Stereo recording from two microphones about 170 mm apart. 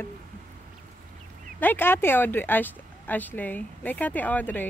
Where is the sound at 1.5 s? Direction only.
10° left (ahead or behind).